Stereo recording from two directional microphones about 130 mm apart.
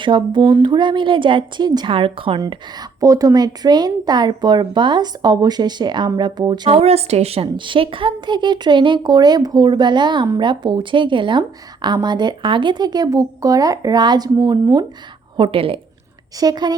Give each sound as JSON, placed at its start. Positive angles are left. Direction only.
{"t": 0.0, "sound": "speech", "side_deg": -40}
{"t": 3.0, "sound": "speech", "side_deg": -25}
{"t": 6.7, "sound": "a woman's voice", "side_deg": -50}
{"t": 7.4, "sound": "speech", "side_deg": -40}
{"t": 15.4, "sound": "a woman's voice", "side_deg": -45}
{"t": 16.4, "sound": "speech", "side_deg": -30}